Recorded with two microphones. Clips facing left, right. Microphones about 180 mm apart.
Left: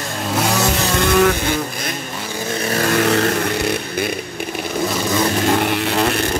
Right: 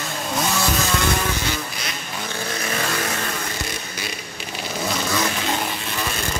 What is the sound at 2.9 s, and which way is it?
Vehicle, 70° left (ahead or behind).